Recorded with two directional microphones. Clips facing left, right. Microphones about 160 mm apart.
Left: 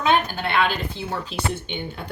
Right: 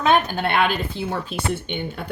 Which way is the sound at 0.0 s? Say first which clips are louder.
Right 2 dB; 50° right (ahead or behind).